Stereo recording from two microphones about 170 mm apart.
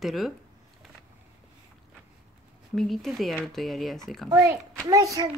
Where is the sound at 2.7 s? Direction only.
Centre (ahead or behind).